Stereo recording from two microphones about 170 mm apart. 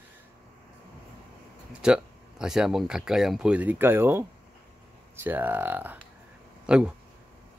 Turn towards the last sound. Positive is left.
turn(degrees=-5)  # may be behind; listen again after turning